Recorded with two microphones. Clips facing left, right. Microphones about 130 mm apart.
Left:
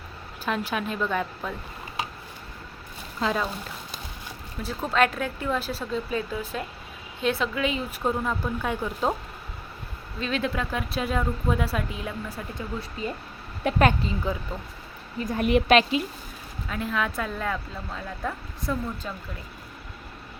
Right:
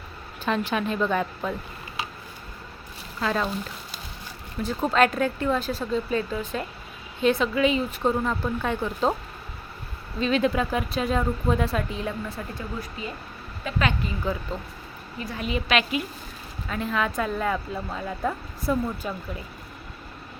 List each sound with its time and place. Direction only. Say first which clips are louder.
0.4 s speech: right 3 dB; 5° left (ahead or behind)
3.2 s speech: even; 20° left (ahead or behind)
4.6 s speech: right 2 dB; centre (ahead or behind)
10.2 s speech: right 5 dB; centre (ahead or behind)
13.0 s speech: left 6 dB; 35° left (ahead or behind)
13.7 s a woman's voice: left 5 dB; 55° left (ahead or behind)
14.5 s speech: right 3 dB; 10° left (ahead or behind)
15.2 s a woman's voice: left 7 dB; 50° left (ahead or behind)
15.7 s speech: left 3 dB; 30° left (ahead or behind)
16.6 s speech: right 2 dB; centre (ahead or behind)